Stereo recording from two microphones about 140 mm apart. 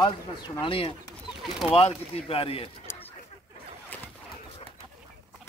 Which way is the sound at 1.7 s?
45° left (ahead or behind).